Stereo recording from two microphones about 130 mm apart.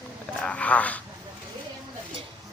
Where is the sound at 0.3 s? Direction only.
10° left (ahead or behind).